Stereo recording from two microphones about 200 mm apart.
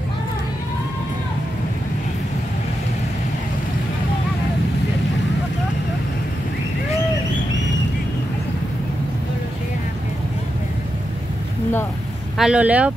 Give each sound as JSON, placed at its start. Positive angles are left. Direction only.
{"t": 12.4, "sound": "speech", "side_deg": -5}